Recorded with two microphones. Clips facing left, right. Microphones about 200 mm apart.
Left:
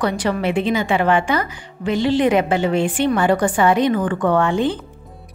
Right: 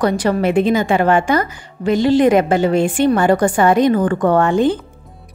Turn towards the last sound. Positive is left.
turn(degrees=-45)  # may be behind; listen again after turning